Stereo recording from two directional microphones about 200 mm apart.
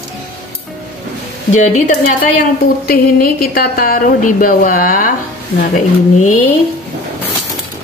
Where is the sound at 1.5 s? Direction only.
35° left (ahead or behind).